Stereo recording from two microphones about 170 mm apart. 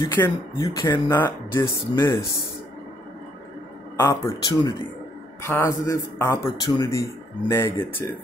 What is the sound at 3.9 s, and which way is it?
A man's voice, 20° left (ahead or behind).